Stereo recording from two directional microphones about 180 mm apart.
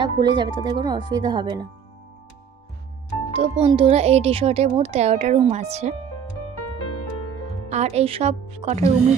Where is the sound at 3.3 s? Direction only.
30° right (ahead or behind).